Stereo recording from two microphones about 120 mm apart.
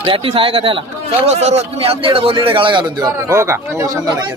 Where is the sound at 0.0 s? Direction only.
50° right (ahead or behind).